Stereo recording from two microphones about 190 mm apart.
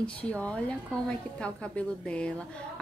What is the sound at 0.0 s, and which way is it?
A woman's voice, 5° left (ahead or behind).